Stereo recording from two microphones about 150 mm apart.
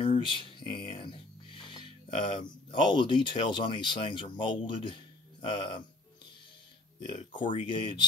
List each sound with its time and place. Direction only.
0.0 s a sound: 35° left (ahead or behind)
1.6 s music: 30° left (ahead or behind)
2.7 s speech: 30° left (ahead or behind)
7.1 s speech: 35° left (ahead or behind)